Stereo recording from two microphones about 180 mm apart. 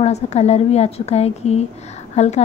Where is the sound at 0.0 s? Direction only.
35° left (ahead or behind).